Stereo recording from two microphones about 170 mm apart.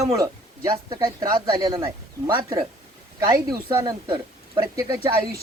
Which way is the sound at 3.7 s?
25° right (ahead or behind).